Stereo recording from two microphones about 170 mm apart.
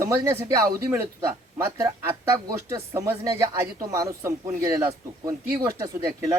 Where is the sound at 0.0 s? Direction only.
15° right (ahead or behind).